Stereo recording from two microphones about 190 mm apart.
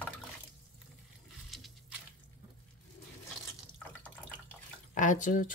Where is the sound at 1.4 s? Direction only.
Centre (ahead or behind).